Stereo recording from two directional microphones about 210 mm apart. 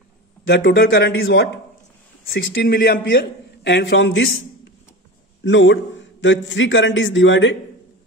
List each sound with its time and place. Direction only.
0.5 s speech: 50° left (ahead or behind)
3.6 s a man's voice: 60° left (ahead or behind)